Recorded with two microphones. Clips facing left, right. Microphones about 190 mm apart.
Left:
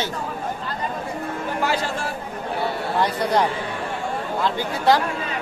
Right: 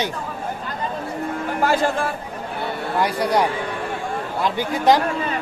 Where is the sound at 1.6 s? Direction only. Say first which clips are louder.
Right 6 dB; 50° right (ahead or behind).